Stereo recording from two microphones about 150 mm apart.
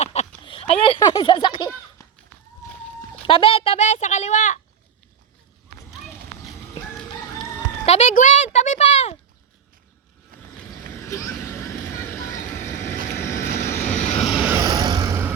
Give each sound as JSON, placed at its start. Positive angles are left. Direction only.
{"t": 0.0, "sound": "a sound", "side_deg": 45}
{"t": 2.0, "sound": "run", "side_deg": 20}
{"t": 3.2, "sound": "a child's voice", "side_deg": 40}
{"t": 5.9, "sound": "run", "side_deg": -5}
{"t": 7.9, "sound": "a sound", "side_deg": 50}
{"t": 10.6, "sound": "vehicle", "side_deg": 15}
{"t": 14.2, "sound": "vehicle", "side_deg": -5}
{"t": 14.5, "sound": "vehicle", "side_deg": -25}